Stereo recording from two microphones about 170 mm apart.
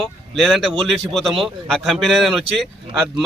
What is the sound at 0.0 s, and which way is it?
Speech, centre (ahead or behind).